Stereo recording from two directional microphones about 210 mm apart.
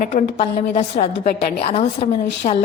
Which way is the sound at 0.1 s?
35° left (ahead or behind).